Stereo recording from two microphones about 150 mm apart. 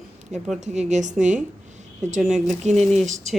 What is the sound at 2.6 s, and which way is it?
Speech, 45° right (ahead or behind).